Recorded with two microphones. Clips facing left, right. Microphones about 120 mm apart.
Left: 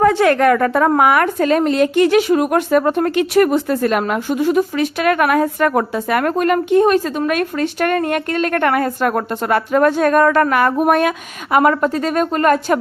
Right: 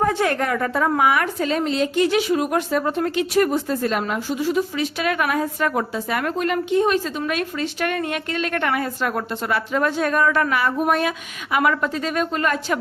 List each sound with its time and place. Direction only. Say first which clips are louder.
0.0 s a woman's voice: left 8 dB; 85° left; by 11.1 s 55° left (ahead or behind)
11.5 s a woman's voice: left 6 dB; 45° left (ahead or behind)